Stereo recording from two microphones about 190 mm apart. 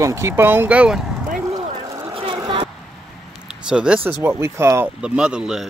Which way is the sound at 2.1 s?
30° right (ahead or behind).